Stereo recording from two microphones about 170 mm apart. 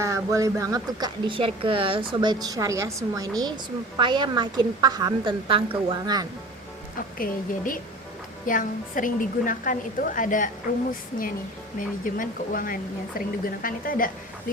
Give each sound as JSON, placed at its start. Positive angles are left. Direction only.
{"t": 0.0, "sound": "speech", "side_deg": -20}
{"t": 7.2, "sound": "a woman's voice", "side_deg": 55}
{"t": 11.8, "sound": "a woman's voice", "side_deg": 50}